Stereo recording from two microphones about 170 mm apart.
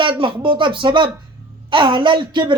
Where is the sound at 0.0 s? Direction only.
30° right (ahead or behind).